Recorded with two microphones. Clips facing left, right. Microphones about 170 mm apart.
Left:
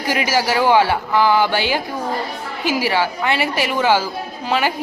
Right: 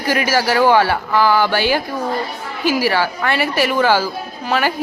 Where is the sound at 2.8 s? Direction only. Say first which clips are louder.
Right 1 dB; 20° left (ahead or behind).